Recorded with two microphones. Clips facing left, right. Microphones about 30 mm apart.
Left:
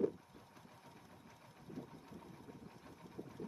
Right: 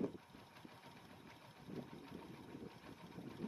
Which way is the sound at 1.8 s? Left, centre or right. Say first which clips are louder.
Left 1 dB; right.